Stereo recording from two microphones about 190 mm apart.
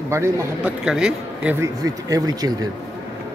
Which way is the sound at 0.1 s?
15° right (ahead or behind).